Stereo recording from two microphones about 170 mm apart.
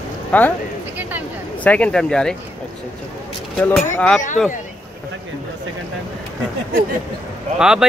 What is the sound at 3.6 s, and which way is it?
Speech, 5° left (ahead or behind).